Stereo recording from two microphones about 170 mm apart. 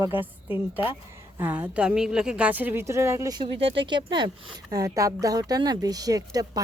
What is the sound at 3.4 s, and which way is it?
Speech, 35° right (ahead or behind).